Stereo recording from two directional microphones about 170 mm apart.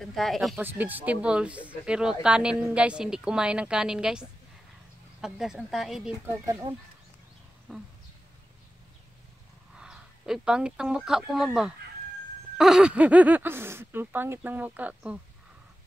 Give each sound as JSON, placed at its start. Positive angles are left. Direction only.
{"t": 0.0, "sound": "speech", "side_deg": 0}
{"t": 0.6, "sound": "speech", "side_deg": -10}
{"t": 6.4, "sound": "speech", "side_deg": -20}
{"t": 9.8, "sound": "speech", "side_deg": -5}